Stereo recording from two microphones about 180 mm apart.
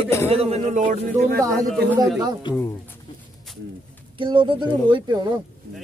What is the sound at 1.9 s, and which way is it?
Speech, centre (ahead or behind).